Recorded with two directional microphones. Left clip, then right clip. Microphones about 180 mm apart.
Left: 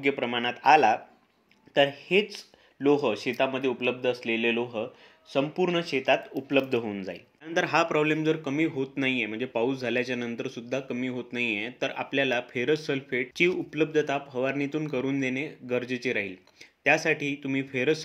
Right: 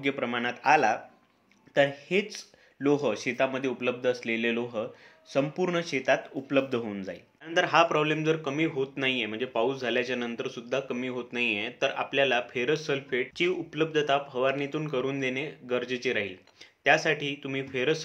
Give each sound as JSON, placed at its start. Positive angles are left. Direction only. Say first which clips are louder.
{"t": 0.0, "sound": "speech", "louder": "left 2 dB", "side_deg": 25}
{"t": 7.4, "sound": "speech", "louder": "right 2 dB", "side_deg": 45}